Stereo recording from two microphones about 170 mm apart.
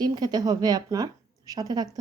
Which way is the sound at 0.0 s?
25° right (ahead or behind).